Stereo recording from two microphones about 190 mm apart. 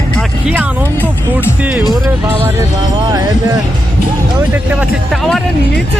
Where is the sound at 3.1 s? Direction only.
20° right (ahead or behind).